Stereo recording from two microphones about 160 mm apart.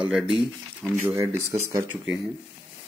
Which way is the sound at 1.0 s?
15° right (ahead or behind).